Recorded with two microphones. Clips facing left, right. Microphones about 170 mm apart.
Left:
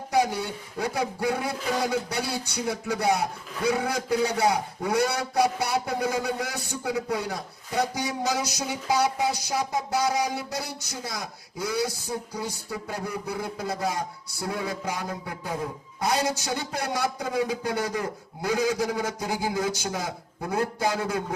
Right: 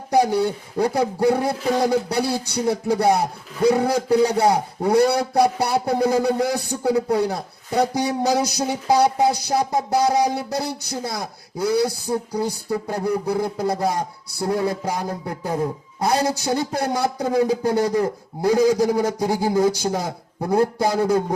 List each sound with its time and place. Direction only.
0.1 s a man's voice: 35° right (ahead or behind)